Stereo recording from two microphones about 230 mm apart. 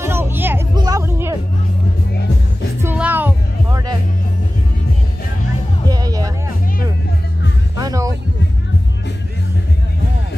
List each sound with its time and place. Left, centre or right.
0.0 s music: centre
2.8 s music: centre
5.9 s music: centre
7.8 s a sound: centre